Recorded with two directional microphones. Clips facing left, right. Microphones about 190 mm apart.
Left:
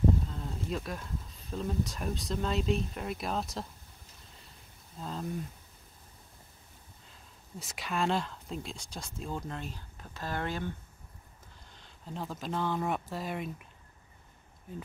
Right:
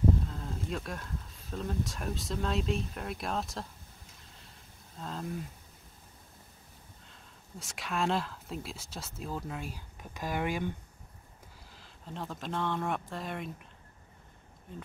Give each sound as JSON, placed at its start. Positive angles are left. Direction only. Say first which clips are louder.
{"t": 0.3, "sound": "speech", "louder": "left 1 dB", "side_deg": 0}
{"t": 4.9, "sound": "speech", "louder": "left 1 dB", "side_deg": 0}
{"t": 7.1, "sound": "speech", "louder": "left 2 dB", "side_deg": 0}
{"t": 11.7, "sound": "speech", "louder": "left 2 dB", "side_deg": 0}